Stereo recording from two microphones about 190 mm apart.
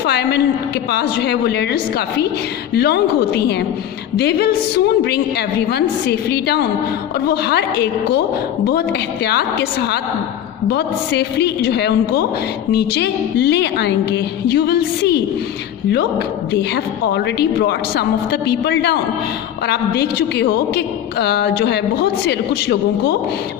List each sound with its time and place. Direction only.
0.0 s a woman's voice: 60° left (ahead or behind)
16.7 s a woman's voice: 60° left (ahead or behind)